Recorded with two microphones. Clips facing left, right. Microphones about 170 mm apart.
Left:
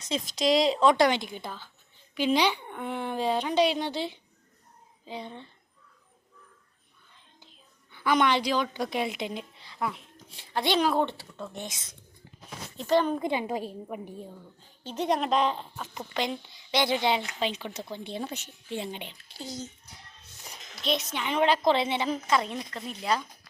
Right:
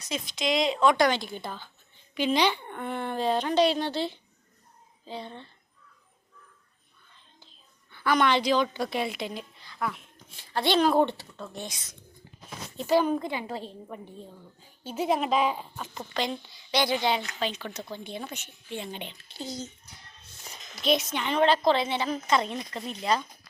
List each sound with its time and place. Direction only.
0.3 s a woman's voice: 40° left (ahead or behind); by 5.5 s 15° left (ahead or behind)
7.9 s a woman's voice: 15° left (ahead or behind)
10.5 s a woman's voice: 15° left (ahead or behind)
10.9 s speech: centre (ahead or behind)
11.2 s a woman's voice: 15° left (ahead or behind)
12.7 s speech: 5° right (ahead or behind)
13.2 s a woman's voice: 15° left (ahead or behind)
14.6 s speech: 5° right (ahead or behind)
16.0 s a woman's voice: 15° left (ahead or behind); by 18.9 s 35° left (ahead or behind)
18.9 s a woman's voice: 5° left (ahead or behind)
20.3 s a sound: centre (ahead or behind)
21.3 s a woman's voice: 15° left (ahead or behind)
22.5 s speech: centre (ahead or behind)